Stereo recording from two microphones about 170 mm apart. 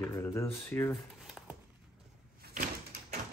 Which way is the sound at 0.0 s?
15° left (ahead or behind).